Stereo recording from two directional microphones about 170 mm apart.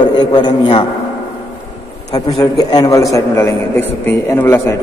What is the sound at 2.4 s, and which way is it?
A man's voice, 25° left (ahead or behind).